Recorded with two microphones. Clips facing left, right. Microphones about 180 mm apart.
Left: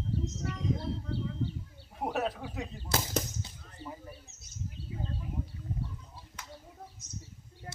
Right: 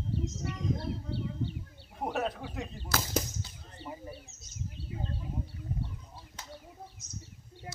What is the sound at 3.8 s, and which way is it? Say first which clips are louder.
Bird: right 2 dB; 20° right (ahead or behind).